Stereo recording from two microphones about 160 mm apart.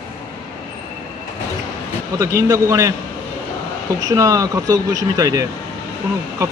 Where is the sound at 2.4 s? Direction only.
20° right (ahead or behind).